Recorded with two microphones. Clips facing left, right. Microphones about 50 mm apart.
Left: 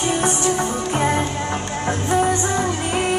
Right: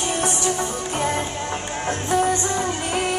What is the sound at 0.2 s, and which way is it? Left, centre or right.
Music, left.